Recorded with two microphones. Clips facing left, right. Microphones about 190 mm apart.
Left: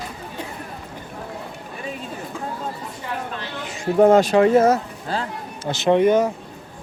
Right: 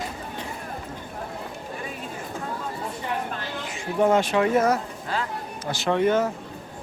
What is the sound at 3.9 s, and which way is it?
Speech, 40° left (ahead or behind).